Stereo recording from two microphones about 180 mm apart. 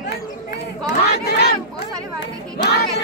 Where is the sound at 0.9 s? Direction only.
65° left (ahead or behind).